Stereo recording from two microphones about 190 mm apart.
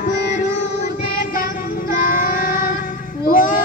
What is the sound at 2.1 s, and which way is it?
Child singing, 45° left (ahead or behind).